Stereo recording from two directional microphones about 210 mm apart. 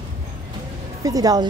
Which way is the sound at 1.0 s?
15° right (ahead or behind).